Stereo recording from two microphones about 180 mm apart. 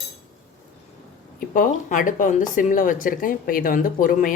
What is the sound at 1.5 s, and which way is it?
Speech, 45° left (ahead or behind).